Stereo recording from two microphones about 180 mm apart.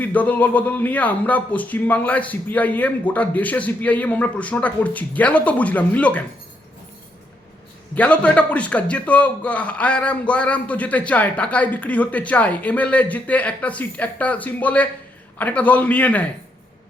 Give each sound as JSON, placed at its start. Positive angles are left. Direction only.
{"t": 0.0, "sound": "a man's voice", "side_deg": 10}
{"t": 7.9, "sound": "a man's voice", "side_deg": 5}